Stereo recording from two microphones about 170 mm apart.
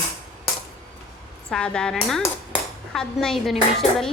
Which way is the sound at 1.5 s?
5° left (ahead or behind).